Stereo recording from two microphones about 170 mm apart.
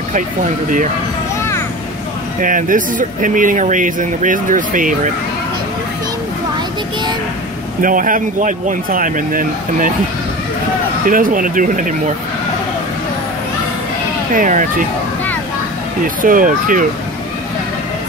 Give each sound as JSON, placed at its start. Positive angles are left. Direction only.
{"t": 2.4, "sound": "speech", "side_deg": -50}
{"t": 7.8, "sound": "speech", "side_deg": -50}
{"t": 11.1, "sound": "speech", "side_deg": -55}
{"t": 14.3, "sound": "speech", "side_deg": -50}
{"t": 16.2, "sound": "speech", "side_deg": -55}